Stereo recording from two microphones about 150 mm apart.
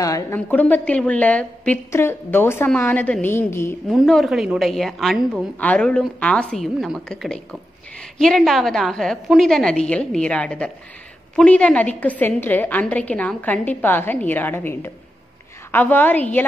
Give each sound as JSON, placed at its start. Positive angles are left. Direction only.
{"t": 0.0, "sound": "a woman's voice", "side_deg": 20}
{"t": 0.5, "sound": "a woman's voice", "side_deg": 10}
{"t": 3.9, "sound": "a woman's voice", "side_deg": 0}